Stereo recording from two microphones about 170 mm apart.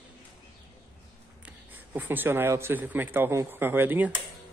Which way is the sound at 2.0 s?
10° right (ahead or behind).